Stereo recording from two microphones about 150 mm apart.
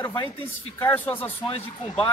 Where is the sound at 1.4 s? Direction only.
35° left (ahead or behind).